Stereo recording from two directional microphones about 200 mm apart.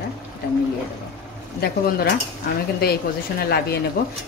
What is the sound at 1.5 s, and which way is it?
Speech, 50° left (ahead or behind).